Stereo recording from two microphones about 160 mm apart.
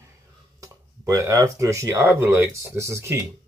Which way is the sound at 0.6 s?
20° right (ahead or behind).